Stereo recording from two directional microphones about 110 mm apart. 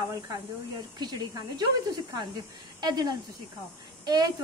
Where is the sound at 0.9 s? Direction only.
40° right (ahead or behind).